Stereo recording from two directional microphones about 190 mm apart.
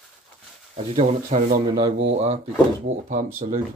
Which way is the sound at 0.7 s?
35° right (ahead or behind).